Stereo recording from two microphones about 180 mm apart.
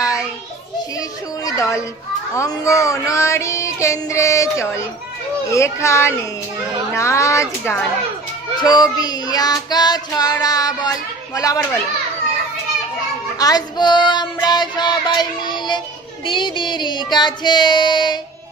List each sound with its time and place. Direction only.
0.9 s speech: 20° left (ahead or behind)
2.3 s child singing: 20° left (ahead or behind)
13.4 s child singing: 20° left (ahead or behind)